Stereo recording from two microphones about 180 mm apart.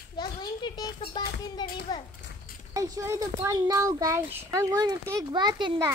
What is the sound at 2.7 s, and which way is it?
Speech, 15° right (ahead or behind).